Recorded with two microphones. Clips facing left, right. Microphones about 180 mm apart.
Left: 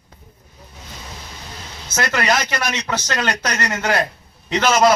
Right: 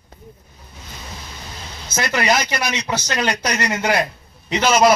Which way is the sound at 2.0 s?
15° right (ahead or behind).